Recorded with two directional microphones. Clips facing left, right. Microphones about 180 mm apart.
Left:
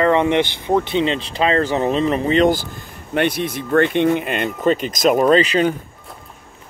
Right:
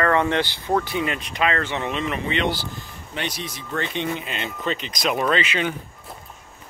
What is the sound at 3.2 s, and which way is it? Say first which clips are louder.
Speech: left 11 dB; 55° left (ahead or behind).